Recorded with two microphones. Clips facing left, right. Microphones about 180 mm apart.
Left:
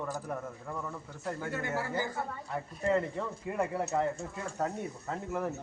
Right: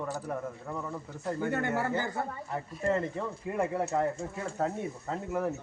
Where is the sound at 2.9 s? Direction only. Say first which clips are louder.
Left 1 dB; 5° right (ahead or behind).